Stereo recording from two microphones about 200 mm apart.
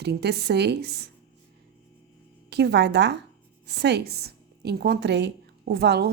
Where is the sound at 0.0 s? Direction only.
55° right (ahead or behind).